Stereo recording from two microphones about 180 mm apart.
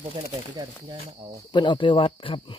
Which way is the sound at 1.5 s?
25° left (ahead or behind).